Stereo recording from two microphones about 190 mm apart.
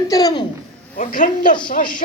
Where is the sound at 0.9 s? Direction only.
45° left (ahead or behind).